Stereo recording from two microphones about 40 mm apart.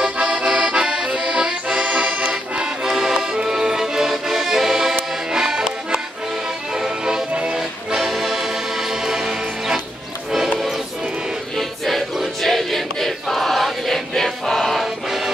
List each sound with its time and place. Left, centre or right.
0.0 s accordion: centre
2.2 s music: centre
5.3 s accordion: centre
6.7 s music: centre
8.0 s accordion: centre
9.0 s music: centre
11.5 s choir: centre